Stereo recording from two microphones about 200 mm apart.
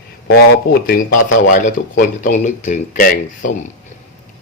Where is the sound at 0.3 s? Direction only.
50° left (ahead or behind).